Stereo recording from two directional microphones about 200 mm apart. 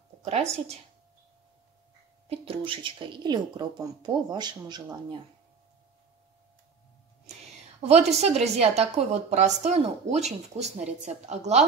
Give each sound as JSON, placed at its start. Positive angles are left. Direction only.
{"t": 0.2, "sound": "a woman's voice", "side_deg": -30}
{"t": 2.2, "sound": "speech", "side_deg": -30}
{"t": 7.8, "sound": "a woman's voice", "side_deg": -35}